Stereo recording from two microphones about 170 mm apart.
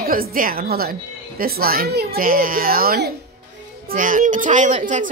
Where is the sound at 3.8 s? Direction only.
50° right (ahead or behind).